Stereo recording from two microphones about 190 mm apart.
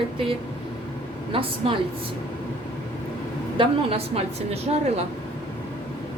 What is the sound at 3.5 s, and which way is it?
Speech, 30° right (ahead or behind).